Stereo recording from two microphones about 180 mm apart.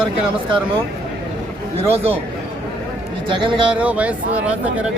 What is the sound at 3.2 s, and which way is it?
Speech, 25° right (ahead or behind).